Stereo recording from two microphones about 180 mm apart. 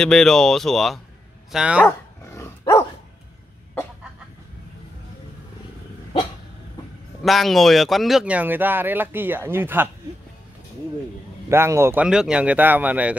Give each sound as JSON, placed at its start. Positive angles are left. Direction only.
{"t": 0.0, "sound": "speech", "side_deg": 5}
{"t": 1.9, "sound": "dog", "side_deg": 15}
{"t": 7.2, "sound": "speech", "side_deg": 0}
{"t": 11.4, "sound": "speech", "side_deg": -15}